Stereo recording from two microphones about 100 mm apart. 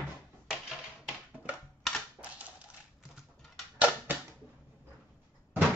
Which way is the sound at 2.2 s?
15° right (ahead or behind).